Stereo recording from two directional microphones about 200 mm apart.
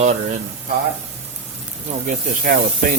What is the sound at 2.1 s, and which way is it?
Speech, 40° right (ahead or behind).